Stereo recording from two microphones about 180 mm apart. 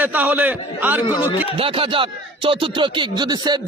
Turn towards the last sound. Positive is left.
turn(degrees=-25)  # may be behind; listen again after turning